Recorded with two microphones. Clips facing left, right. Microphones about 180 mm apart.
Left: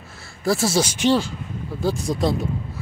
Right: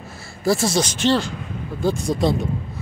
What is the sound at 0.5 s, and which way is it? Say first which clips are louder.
Speech: right 1 dB; 5° left (ahead or behind).